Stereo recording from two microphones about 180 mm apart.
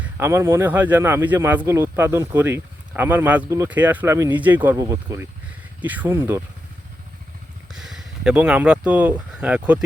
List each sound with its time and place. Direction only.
0.0 s speech: 15° right (ahead or behind)
7.7 s speech: centre (ahead or behind)